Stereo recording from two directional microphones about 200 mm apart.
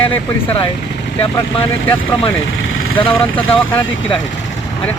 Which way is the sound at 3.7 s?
10° left (ahead or behind).